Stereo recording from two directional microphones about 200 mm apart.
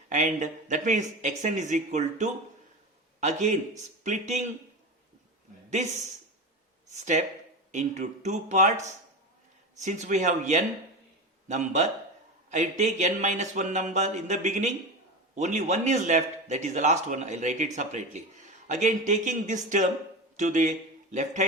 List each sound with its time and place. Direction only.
0.1 s a man's voice: 40° right (ahead or behind)
6.9 s a man's voice: 35° right (ahead or behind)